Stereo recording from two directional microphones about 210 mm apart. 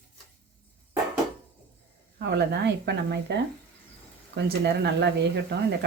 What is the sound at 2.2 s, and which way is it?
Speech, 55° right (ahead or behind).